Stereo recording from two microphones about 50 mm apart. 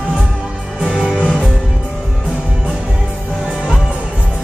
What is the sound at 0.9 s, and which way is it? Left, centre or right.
Music, centre.